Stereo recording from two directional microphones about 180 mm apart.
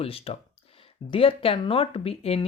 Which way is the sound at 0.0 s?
30° left (ahead or behind).